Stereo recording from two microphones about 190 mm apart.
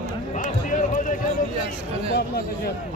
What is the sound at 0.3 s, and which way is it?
Run, 40° left (ahead or behind).